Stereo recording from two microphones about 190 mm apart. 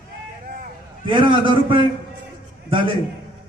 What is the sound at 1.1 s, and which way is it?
A man's voice, 25° right (ahead or behind).